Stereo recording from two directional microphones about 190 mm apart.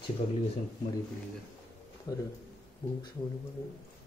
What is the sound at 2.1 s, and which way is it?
Speech, 20° left (ahead or behind).